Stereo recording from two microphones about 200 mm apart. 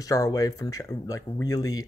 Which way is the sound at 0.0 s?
15° left (ahead or behind).